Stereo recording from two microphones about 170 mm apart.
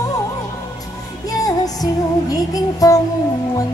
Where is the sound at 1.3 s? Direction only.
20° left (ahead or behind).